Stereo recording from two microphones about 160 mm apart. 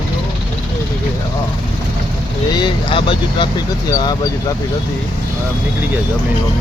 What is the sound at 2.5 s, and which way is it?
Speech, 30° left (ahead or behind).